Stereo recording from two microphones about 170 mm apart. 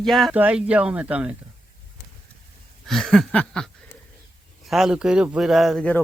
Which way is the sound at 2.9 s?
Centre (ahead or behind).